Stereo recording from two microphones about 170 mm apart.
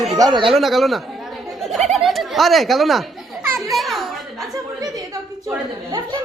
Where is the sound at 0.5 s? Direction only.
Centre (ahead or behind).